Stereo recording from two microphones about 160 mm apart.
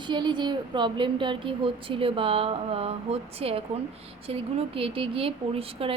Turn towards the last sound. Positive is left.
turn(degrees=-35)  # may be behind; listen again after turning